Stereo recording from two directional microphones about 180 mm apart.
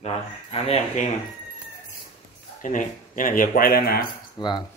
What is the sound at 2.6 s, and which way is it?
Speech, 45° left (ahead or behind).